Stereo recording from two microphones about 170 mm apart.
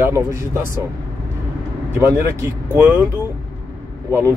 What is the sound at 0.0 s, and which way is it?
Speech, 15° right (ahead or behind).